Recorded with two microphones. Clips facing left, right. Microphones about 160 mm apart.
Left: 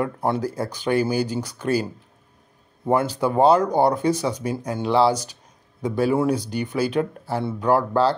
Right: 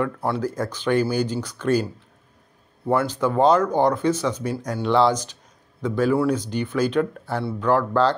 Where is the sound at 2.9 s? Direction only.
15° left (ahead or behind).